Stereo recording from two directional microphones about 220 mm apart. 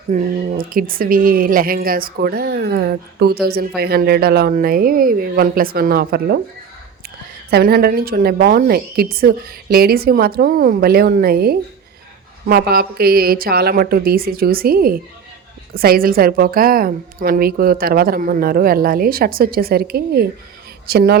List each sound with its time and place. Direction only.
0.1 s a woman's voice: 40° right (ahead or behind)
7.5 s a woman's voice: 45° right (ahead or behind)